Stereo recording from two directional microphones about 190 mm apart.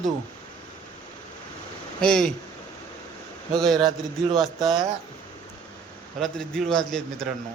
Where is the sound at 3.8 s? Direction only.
20° right (ahead or behind).